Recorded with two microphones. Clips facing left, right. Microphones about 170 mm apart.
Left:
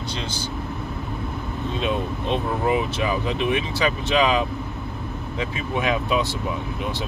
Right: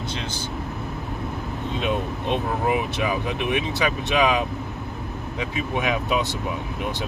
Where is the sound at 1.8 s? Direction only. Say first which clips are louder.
Even; 15° right (ahead or behind).